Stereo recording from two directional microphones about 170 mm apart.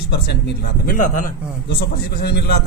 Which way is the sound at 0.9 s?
50° left (ahead or behind).